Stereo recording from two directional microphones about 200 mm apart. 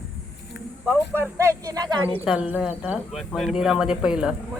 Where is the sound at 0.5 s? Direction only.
60° left (ahead or behind).